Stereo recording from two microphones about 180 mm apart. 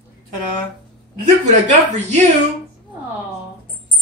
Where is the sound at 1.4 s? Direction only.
40° right (ahead or behind).